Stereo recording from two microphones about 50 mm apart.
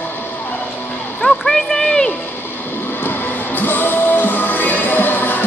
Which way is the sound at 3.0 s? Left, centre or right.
Left.